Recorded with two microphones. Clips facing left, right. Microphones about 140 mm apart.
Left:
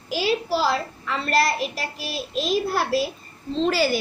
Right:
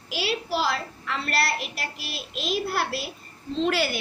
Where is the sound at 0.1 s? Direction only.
40° left (ahead or behind).